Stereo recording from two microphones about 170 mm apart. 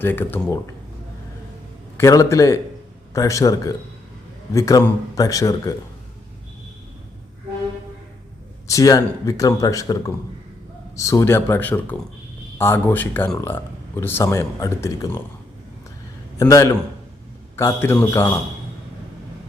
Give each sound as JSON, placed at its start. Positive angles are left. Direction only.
{"t": 0.0, "sound": "speech", "side_deg": 10}
{"t": 2.0, "sound": "speech", "side_deg": 15}
{"t": 8.6, "sound": "speech", "side_deg": 20}
{"t": 16.4, "sound": "speech", "side_deg": 20}